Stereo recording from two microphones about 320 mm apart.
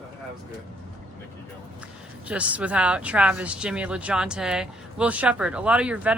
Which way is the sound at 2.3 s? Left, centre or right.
Centre.